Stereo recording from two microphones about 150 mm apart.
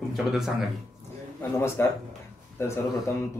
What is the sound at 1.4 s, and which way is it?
Speech, 15° left (ahead or behind).